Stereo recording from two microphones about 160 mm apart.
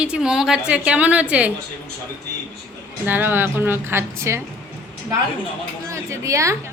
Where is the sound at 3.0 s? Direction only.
10° right (ahead or behind).